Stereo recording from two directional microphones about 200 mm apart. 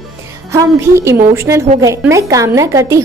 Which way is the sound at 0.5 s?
15° right (ahead or behind).